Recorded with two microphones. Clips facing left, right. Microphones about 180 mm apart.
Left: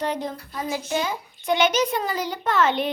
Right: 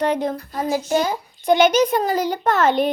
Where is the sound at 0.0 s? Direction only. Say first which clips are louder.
Right 6 dB; 60° right (ahead or behind).